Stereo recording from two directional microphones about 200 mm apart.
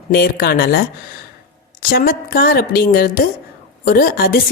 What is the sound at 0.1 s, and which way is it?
Speech, 50° left (ahead or behind).